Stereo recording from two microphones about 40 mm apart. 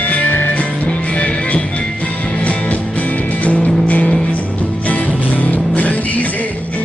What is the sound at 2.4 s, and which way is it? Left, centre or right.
Music, left.